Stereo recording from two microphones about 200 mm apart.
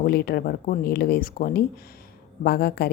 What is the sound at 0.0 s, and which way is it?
A woman's voice, 50° left (ahead or behind).